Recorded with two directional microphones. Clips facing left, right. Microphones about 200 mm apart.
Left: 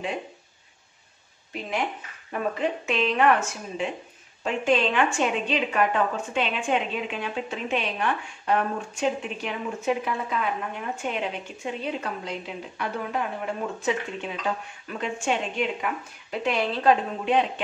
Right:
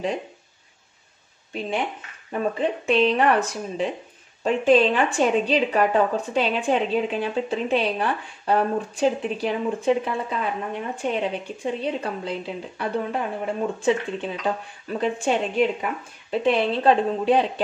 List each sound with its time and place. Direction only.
1.5 s speech: 30° right (ahead or behind)